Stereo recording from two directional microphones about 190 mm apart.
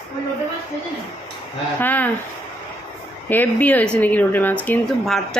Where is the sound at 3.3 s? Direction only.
10° left (ahead or behind).